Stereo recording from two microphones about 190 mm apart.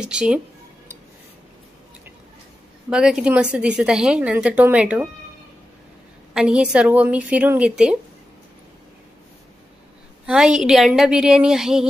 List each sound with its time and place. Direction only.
0.0 s a woman's voice: 5° right (ahead or behind)
2.9 s a woman's voice: 5° right (ahead or behind)
6.3 s a woman's voice: 5° right (ahead or behind)
10.2 s a woman's voice: 5° right (ahead or behind)